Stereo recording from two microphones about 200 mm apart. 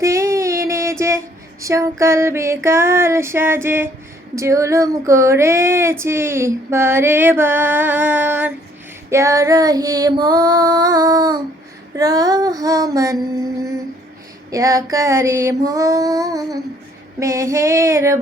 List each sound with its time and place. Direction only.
0.0 s child singing: 15° right (ahead or behind)
9.0 s female singing: 15° right (ahead or behind)
11.9 s child singing: 20° right (ahead or behind)
14.5 s child singing: 15° right (ahead or behind)